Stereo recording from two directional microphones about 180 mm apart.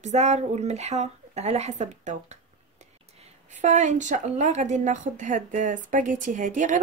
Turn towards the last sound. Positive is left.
turn(degrees=-45)  # may be behind; listen again after turning